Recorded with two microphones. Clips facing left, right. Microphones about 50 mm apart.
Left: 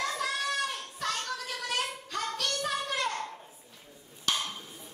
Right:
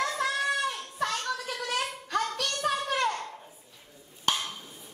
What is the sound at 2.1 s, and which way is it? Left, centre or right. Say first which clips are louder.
Child singing: right 4 dB; right.